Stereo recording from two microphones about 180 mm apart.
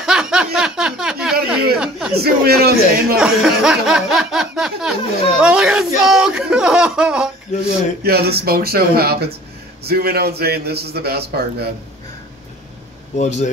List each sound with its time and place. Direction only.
0.0 s snicker: 5° right (ahead or behind)
1.8 s speech: 5° right (ahead or behind)
2.1 s a man's voice: 60° right (ahead or behind)
3.2 s speech: 5° right (ahead or behind)
8.0 s a man's voice: 60° right (ahead or behind)
13.2 s speech: 40° left (ahead or behind)